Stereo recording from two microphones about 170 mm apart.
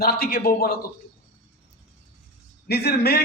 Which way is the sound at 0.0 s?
65° left (ahead or behind).